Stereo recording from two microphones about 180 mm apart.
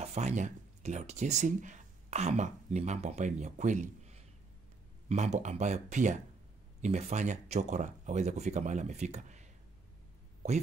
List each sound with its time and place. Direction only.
0.0 s speech: 40° right (ahead or behind)